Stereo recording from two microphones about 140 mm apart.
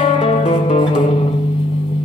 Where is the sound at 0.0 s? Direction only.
45° left (ahead or behind).